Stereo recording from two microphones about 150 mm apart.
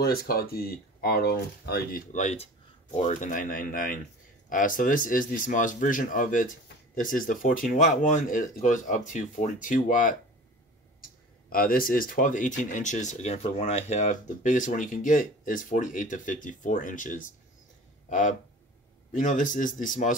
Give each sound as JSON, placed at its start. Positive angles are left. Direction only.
{"t": 0.0, "sound": "speech", "side_deg": 90}
{"t": 2.2, "sound": "speech", "side_deg": 50}
{"t": 11.5, "sound": "speech", "side_deg": 75}
{"t": 19.1, "sound": "speech", "side_deg": 60}